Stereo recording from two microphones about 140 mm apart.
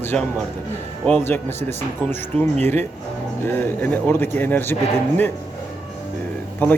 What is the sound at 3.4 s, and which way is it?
A man's voice, 15° left (ahead or behind).